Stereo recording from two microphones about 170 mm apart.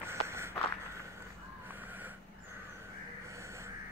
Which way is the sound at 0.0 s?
15° right (ahead or behind).